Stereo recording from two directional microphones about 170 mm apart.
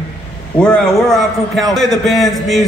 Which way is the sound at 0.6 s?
5° left (ahead or behind).